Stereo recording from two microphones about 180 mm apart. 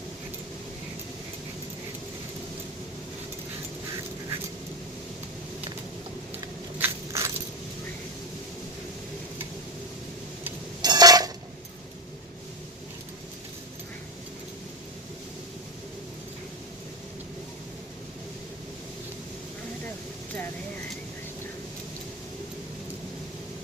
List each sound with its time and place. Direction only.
6.7 s keys jangling: 15° right (ahead or behind)
10.8 s dishes: 20° right (ahead or behind)